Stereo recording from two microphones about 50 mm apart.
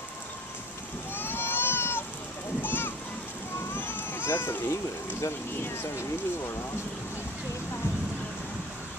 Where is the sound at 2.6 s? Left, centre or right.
Left.